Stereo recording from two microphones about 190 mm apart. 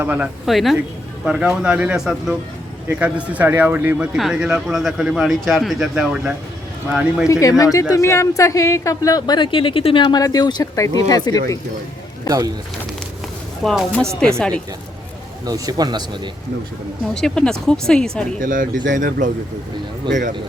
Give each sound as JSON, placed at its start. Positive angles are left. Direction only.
{"t": 0.0, "sound": "speech", "side_deg": -10}
{"t": 7.3, "sound": "speech", "side_deg": 15}
{"t": 13.7, "sound": "speech", "side_deg": 5}
{"t": 15.4, "sound": "speech", "side_deg": -20}
{"t": 17.2, "sound": "speech", "side_deg": 5}
{"t": 18.3, "sound": "speech", "side_deg": -45}